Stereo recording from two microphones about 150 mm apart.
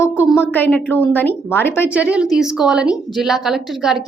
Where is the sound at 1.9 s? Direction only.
10° right (ahead or behind).